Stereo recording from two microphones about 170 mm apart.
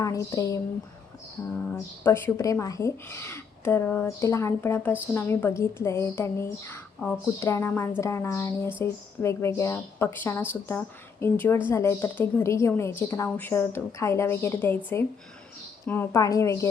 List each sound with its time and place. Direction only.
0.0 s a woman's voice: 20° left (ahead or behind)
1.6 s speech: 15° left (ahead or behind)
15.9 s speech: 15° left (ahead or behind)